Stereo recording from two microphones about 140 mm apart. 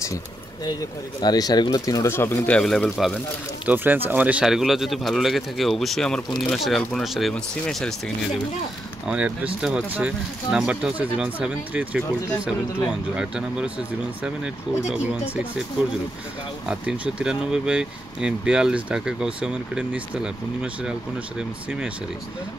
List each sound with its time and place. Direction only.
1.2 s speech: 30° left (ahead or behind); by 3.2 s centre (ahead or behind)
3.6 s speech: 15° right (ahead or behind); by 7.9 s 5° left (ahead or behind)
9.0 s speech: 10° right (ahead or behind)
13.1 s speech: 5° right (ahead or behind)
16.6 s speech: 10° right (ahead or behind)